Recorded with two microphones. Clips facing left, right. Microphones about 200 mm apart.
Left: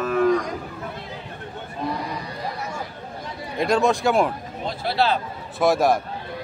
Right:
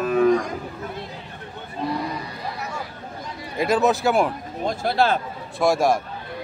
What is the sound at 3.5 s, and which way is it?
Speech, 5° right (ahead or behind).